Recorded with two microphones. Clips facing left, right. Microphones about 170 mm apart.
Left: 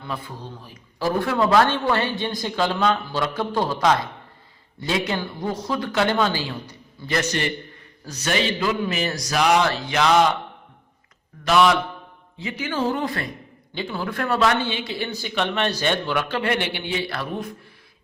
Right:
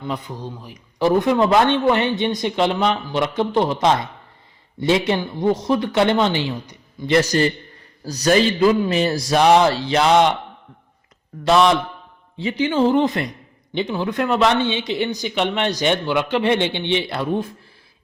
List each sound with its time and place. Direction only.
0.0 s speech: 15° right (ahead or behind)
7.1 s a man's voice: 35° right (ahead or behind)
11.4 s speech: 25° right (ahead or behind)